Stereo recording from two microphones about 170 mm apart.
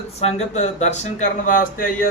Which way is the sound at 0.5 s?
45° left (ahead or behind).